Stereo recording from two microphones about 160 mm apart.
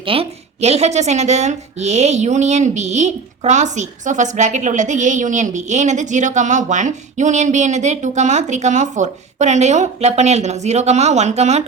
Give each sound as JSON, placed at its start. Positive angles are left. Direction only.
{"t": 0.0, "sound": "a woman's voice", "side_deg": -35}